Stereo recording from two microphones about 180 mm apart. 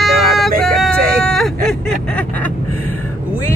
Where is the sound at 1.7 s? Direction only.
5° left (ahead or behind).